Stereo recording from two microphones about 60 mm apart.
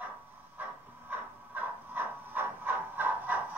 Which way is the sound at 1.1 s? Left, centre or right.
Right.